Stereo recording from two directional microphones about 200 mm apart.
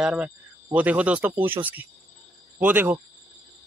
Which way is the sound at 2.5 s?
10° right (ahead or behind).